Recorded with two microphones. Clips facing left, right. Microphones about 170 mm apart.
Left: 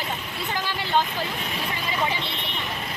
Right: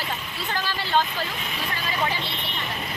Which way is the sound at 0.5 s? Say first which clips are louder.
Even; 20° left (ahead or behind).